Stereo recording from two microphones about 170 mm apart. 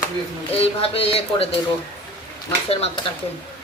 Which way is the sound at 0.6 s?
35° left (ahead or behind).